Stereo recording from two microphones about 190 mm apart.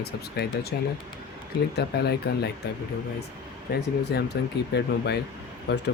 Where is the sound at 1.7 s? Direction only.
60° left (ahead or behind).